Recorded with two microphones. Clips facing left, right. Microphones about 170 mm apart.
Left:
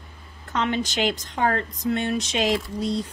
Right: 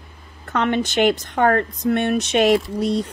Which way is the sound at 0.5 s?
55° right (ahead or behind).